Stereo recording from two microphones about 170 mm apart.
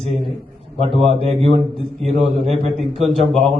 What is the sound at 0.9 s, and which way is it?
Speech, 35° right (ahead or behind).